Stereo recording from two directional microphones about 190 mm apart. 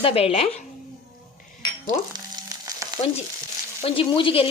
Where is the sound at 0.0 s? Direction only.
30° left (ahead or behind).